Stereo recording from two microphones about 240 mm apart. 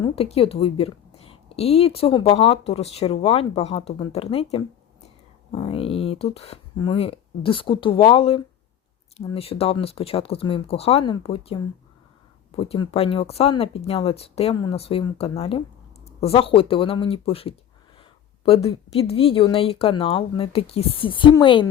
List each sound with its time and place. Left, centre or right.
0.0 s a woman's voice: left
5.5 s a woman's voice: left